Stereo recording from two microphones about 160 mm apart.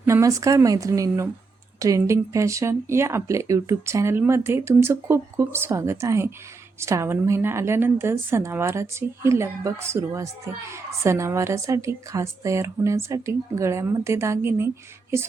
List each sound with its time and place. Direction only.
0.0 s a woman's voice: 20° right (ahead or behind)